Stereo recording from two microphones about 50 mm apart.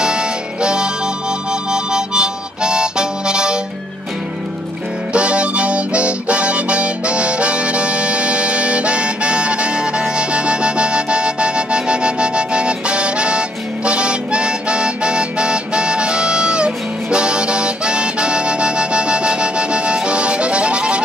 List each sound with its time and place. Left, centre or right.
0.0 s music: centre
1.5 s harmonica: centre
5.1 s harmonica: right